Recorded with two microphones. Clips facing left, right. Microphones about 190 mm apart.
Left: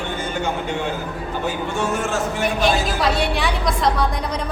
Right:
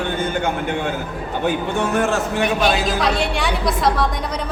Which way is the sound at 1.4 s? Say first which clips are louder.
Right 3 dB; 60° right (ahead or behind).